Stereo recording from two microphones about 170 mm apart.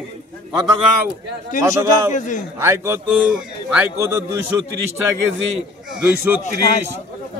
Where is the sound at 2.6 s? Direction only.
15° right (ahead or behind).